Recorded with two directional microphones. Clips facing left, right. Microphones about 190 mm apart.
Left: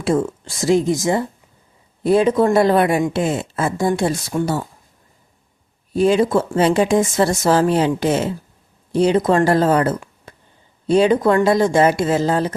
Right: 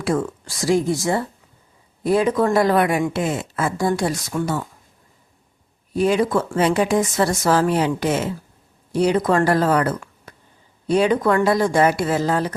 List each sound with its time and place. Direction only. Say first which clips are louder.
0.0 s speech: left 3 dB; 25° left (ahead or behind)
5.9 s speech: left 3 dB; 25° left (ahead or behind)